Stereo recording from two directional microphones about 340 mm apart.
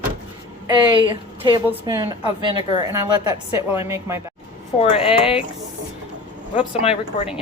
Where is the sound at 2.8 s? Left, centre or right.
Centre.